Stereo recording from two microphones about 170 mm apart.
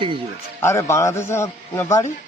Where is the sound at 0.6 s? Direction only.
15° left (ahead or behind).